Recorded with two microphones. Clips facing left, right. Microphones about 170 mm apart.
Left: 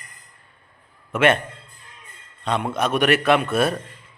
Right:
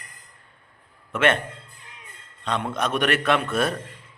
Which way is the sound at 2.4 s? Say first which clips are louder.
Left 3 dB; 10° left (ahead or behind).